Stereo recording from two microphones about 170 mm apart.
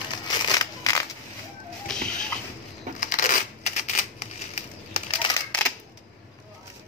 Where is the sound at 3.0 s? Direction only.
50° left (ahead or behind).